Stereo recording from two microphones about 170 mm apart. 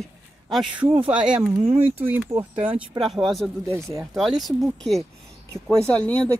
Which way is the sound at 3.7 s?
15° right (ahead or behind).